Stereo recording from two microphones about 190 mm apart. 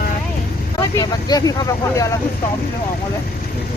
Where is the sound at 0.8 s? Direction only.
20° left (ahead or behind).